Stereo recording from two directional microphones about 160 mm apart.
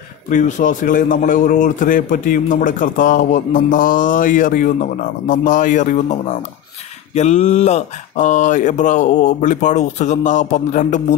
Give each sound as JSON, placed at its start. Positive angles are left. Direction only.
{"t": 0.3, "sound": "a man's voice", "side_deg": 50}